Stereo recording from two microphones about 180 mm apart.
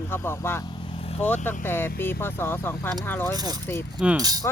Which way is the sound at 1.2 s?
10° left (ahead or behind).